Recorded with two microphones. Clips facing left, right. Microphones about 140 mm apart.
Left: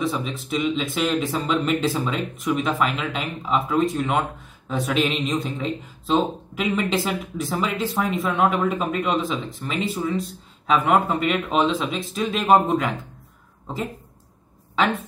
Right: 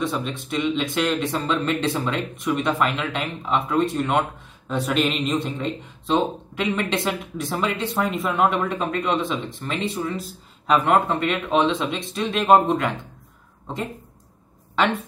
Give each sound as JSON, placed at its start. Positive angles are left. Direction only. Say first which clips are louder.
{"t": 0.0, "sound": "speech", "louder": "even", "side_deg": 0}